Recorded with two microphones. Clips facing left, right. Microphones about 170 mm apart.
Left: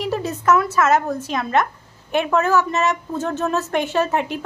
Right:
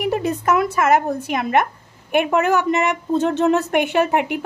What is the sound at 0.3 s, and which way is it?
Speech, 15° right (ahead or behind).